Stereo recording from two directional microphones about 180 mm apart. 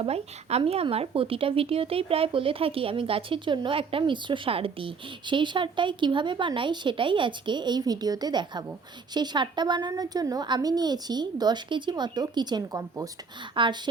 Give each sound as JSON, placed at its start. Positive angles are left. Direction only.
{"t": 0.0, "sound": "speech", "side_deg": -35}